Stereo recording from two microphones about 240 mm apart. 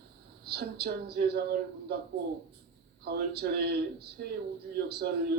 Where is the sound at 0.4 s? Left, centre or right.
Right.